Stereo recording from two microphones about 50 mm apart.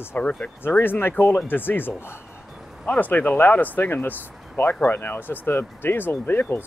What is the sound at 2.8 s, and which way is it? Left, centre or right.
Speech, left.